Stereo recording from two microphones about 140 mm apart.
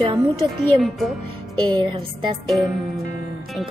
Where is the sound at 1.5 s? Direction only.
35° right (ahead or behind).